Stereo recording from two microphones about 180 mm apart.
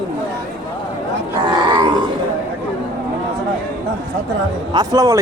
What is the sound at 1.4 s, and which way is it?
Wild animals, 25° right (ahead or behind).